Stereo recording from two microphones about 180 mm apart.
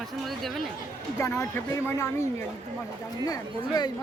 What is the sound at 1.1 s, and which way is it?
Speech, 15° left (ahead or behind).